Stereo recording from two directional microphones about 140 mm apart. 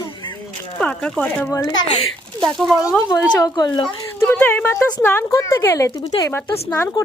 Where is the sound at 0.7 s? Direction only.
10° left (ahead or behind).